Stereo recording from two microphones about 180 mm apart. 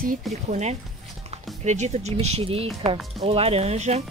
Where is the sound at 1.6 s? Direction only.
40° right (ahead or behind).